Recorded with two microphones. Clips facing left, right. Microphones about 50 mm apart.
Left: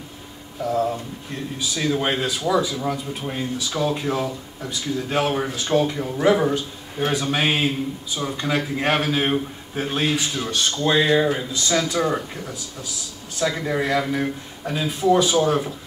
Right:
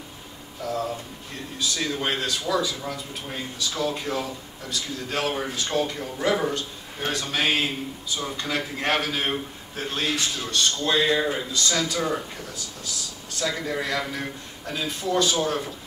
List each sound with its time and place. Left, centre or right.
0.7 s speech: centre